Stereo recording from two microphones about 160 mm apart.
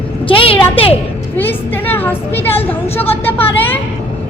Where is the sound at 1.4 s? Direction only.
10° left (ahead or behind).